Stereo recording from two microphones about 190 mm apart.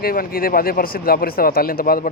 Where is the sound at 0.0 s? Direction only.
50° left (ahead or behind).